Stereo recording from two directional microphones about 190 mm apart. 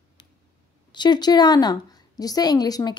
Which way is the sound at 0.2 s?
25° left (ahead or behind).